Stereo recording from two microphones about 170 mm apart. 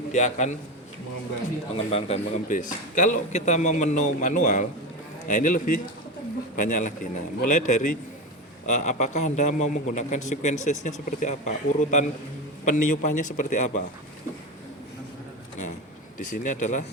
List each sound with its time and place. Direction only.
0.1 s speech: 45° left (ahead or behind)
1.7 s speech: 35° left (ahead or behind)
16.1 s speech: 50° left (ahead or behind)